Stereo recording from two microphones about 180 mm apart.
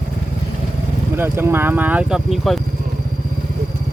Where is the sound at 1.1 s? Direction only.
10° right (ahead or behind).